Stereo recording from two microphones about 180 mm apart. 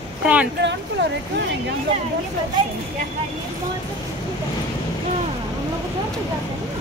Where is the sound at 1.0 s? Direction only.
75° right (ahead or behind).